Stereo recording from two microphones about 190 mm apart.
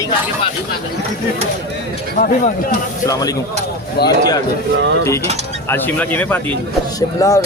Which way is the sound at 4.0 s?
55° left (ahead or behind).